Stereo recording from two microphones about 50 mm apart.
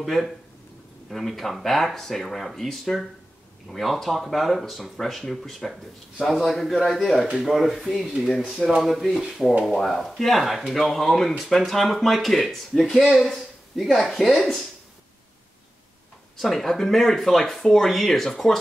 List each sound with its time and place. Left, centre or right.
0.0 s speech: centre
16.3 s speech: centre